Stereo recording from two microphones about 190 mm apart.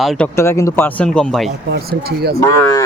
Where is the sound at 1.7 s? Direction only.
55° right (ahead or behind).